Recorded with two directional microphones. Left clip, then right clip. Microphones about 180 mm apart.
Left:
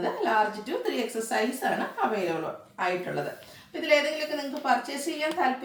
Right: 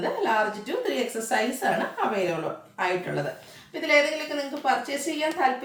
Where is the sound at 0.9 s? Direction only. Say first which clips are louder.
Right 3 dB; 15° right (ahead or behind).